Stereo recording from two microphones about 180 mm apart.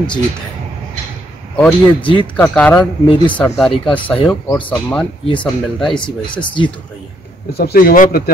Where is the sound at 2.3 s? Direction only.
10° left (ahead or behind).